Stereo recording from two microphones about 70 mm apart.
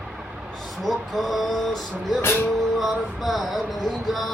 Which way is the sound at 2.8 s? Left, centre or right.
Centre.